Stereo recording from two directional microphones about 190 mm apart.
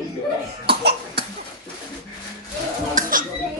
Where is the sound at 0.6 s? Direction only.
55° right (ahead or behind).